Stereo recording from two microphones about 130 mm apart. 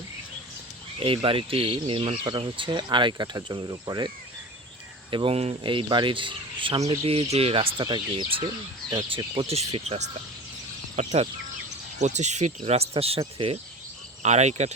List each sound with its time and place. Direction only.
0.9 s speech: 45° right (ahead or behind)
5.1 s speech: 45° right (ahead or behind)
5.6 s speech: 40° right (ahead or behind)
9.5 s speech: 50° right (ahead or behind)
14.2 s speech: 60° right (ahead or behind)